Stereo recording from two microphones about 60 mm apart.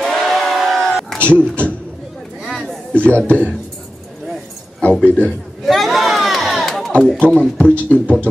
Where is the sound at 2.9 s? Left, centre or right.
Left.